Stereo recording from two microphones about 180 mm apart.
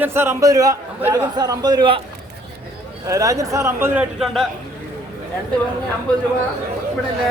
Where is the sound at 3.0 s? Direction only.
15° right (ahead or behind).